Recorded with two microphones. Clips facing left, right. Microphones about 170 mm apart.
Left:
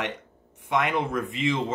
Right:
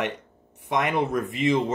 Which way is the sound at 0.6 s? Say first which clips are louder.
Right 1 dB; 40° right (ahead or behind).